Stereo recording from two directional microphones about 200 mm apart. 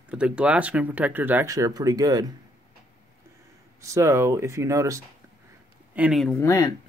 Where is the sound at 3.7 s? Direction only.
15° right (ahead or behind).